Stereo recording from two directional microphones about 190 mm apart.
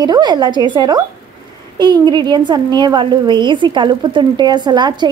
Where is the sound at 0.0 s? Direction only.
20° right (ahead or behind).